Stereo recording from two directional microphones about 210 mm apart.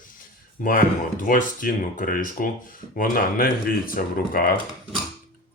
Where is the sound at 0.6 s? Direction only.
40° left (ahead or behind).